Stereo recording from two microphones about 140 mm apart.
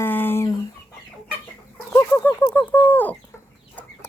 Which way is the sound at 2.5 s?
10° left (ahead or behind).